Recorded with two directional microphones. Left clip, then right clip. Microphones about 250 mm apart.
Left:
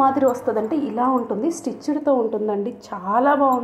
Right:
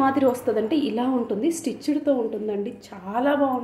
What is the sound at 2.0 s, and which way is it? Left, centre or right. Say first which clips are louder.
A woman's voice: left 6 dB; centre.